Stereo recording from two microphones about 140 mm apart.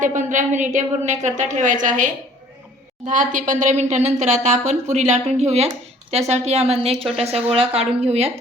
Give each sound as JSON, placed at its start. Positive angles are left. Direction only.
{"t": 0.0, "sound": "a woman's voice", "side_deg": -65}